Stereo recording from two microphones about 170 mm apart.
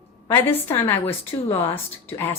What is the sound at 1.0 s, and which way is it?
Speech, 35° left (ahead or behind).